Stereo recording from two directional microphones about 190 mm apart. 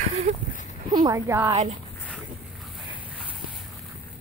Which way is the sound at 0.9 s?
15° right (ahead or behind).